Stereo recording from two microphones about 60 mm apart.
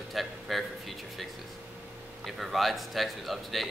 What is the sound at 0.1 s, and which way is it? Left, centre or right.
Music, centre.